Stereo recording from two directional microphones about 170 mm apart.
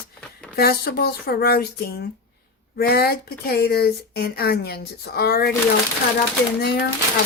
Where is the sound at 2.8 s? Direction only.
65° left (ahead or behind).